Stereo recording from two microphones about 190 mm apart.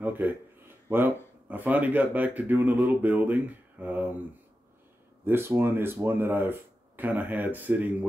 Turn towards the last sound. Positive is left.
turn(degrees=-10)  # may be behind; listen again after turning